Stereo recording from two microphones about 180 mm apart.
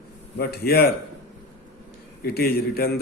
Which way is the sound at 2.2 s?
60° left (ahead or behind).